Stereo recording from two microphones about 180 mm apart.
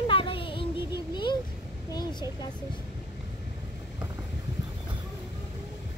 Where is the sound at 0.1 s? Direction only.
30° left (ahead or behind).